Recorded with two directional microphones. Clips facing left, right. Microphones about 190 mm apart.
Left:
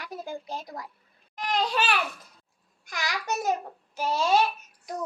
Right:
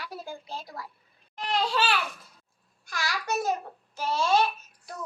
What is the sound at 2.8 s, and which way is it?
Babbling, 20° left (ahead or behind).